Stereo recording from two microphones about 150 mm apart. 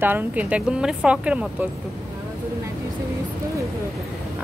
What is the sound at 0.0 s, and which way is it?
Speech, 10° right (ahead or behind).